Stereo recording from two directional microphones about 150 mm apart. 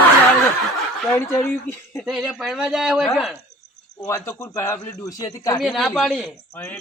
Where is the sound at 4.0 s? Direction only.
20° left (ahead or behind).